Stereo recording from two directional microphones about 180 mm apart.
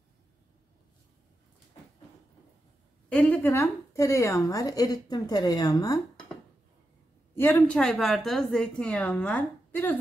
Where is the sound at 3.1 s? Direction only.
10° left (ahead or behind).